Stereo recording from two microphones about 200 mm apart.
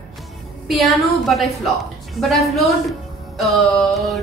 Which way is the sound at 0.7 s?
Centre (ahead or behind).